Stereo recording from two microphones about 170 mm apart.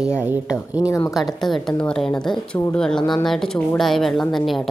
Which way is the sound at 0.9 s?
20° left (ahead or behind).